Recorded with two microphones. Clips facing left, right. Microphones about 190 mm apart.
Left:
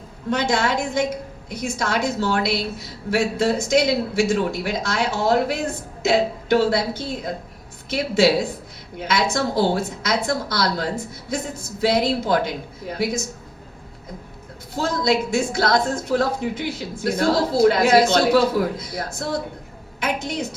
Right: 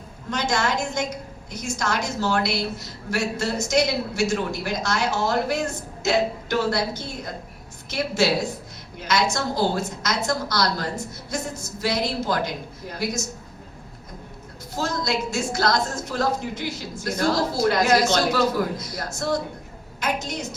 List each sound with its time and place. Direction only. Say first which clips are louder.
0.3 s a woman's voice: left 4 dB; 60° left (ahead or behind)
14.8 s a woman's voice: left 5 dB; 60° left (ahead or behind)